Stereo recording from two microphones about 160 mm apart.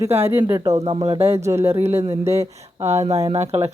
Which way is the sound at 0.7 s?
35° right (ahead or behind).